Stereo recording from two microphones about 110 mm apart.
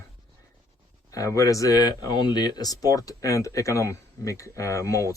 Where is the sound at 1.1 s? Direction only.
30° left (ahead or behind).